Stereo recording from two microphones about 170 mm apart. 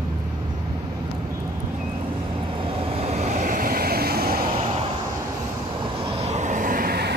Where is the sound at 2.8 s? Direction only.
35° right (ahead or behind); by 4.4 s 65° right (ahead or behind).